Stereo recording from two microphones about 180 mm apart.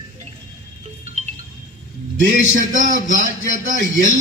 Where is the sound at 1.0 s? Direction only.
40° right (ahead or behind).